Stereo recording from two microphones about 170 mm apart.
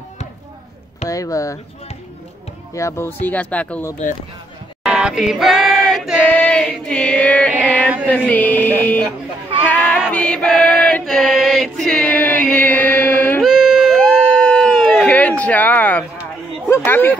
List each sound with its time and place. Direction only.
1.0 s speech: 20° left (ahead or behind)
2.7 s chant: 15° left (ahead or behind)
4.8 s a sound: 5° right (ahead or behind)
6.2 s chant: 10° left (ahead or behind)
10.1 s choir: 5° left (ahead or behind)
13.4 s a sound: centre (ahead or behind)